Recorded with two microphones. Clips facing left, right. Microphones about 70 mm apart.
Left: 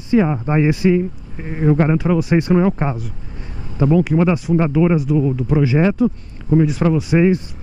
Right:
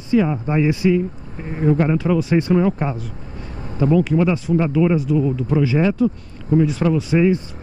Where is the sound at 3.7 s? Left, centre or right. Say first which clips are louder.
Left 1 dB; centre.